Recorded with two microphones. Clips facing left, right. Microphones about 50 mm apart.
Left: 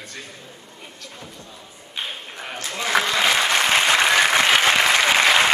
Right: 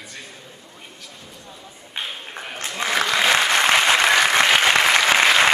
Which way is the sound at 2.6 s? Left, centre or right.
Right.